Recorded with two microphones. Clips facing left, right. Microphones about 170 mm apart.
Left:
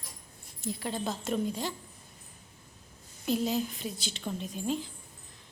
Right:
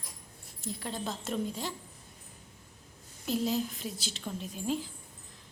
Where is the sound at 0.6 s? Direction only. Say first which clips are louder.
Left 3 dB; centre (ahead or behind).